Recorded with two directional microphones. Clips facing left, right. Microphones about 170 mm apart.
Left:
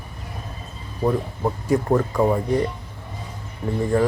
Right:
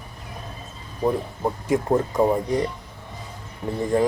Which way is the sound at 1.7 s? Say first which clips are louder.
Left 1 dB; 20° right (ahead or behind).